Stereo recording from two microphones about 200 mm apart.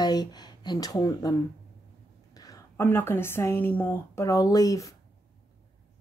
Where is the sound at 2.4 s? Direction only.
15° left (ahead or behind).